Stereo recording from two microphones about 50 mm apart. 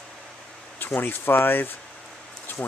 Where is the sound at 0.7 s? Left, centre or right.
Left.